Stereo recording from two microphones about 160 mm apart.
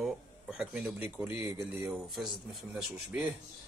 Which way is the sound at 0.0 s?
5° right (ahead or behind).